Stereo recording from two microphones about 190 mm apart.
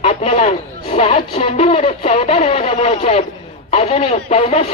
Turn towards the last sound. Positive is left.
turn(degrees=35)  # may be behind; listen again after turning